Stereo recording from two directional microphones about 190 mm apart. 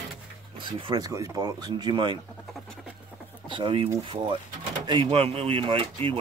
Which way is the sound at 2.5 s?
Centre (ahead or behind).